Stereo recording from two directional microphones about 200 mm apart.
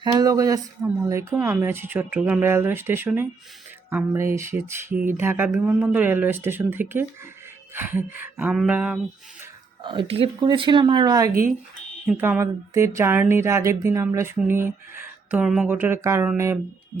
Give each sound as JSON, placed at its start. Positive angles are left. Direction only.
{"t": 0.0, "sound": "speech", "side_deg": -20}
{"t": 9.8, "sound": "speech", "side_deg": -25}